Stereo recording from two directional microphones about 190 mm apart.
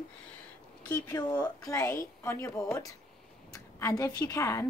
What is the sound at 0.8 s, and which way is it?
A woman's voice, 20° left (ahead or behind).